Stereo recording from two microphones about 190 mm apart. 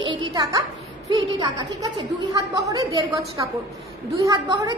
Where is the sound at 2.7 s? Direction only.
20° right (ahead or behind).